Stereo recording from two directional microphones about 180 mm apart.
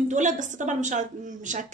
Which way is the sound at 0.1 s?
45° right (ahead or behind).